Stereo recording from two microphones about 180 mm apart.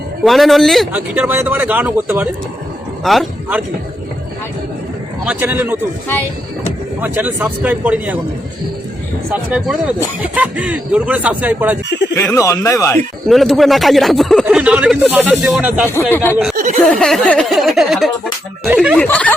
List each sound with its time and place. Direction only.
0.3 s speech: centre (ahead or behind)
1.1 s a man's voice: 10° right (ahead or behind)
5.2 s speech: 10° right (ahead or behind)
7.0 s speech: 10° right (ahead or behind)
9.3 s speech: 5° right (ahead or behind)
12.1 s speech: 15° left (ahead or behind)
13.2 s speech: centre (ahead or behind)
16.1 s speech: 10° left (ahead or behind); by 18.9 s 5° right (ahead or behind)
18.9 s speech: 10° left (ahead or behind)